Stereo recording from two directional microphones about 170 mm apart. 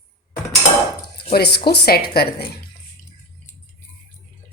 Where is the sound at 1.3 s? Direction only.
70° left (ahead or behind).